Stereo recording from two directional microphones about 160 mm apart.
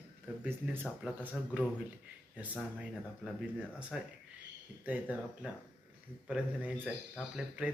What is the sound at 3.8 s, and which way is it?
Speech, 5° right (ahead or behind).